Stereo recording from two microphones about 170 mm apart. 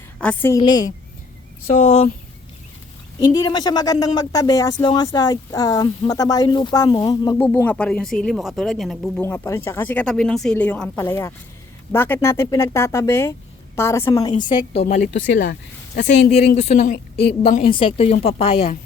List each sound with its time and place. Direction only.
0.2 s a woman's voice: 5° left (ahead or behind)
0.5 s speech: 25° left (ahead or behind)
1.8 s a woman's voice: 35° left (ahead or behind)
3.2 s speech: 25° left (ahead or behind)
7.3 s speech: 10° left (ahead or behind)
9.2 s speech: 15° left (ahead or behind)
14.4 s a woman's voice: 35° left (ahead or behind)
15.1 s speech: 90° left
16.7 s a woman's voice: 60° left (ahead or behind)
17.7 s a woman's voice: 35° left (ahead or behind)